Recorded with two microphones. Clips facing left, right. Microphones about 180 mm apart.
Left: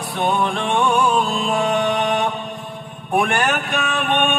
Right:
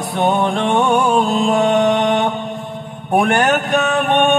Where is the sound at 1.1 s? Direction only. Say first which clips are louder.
Right 5 dB; 40° right (ahead or behind).